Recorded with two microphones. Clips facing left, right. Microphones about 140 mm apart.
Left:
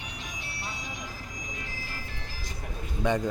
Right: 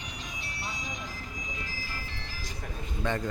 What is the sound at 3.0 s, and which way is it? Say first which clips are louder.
Speech: left 4 dB; 15° left (ahead or behind).